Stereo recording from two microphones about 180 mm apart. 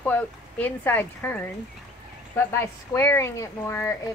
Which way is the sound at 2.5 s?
15° left (ahead or behind).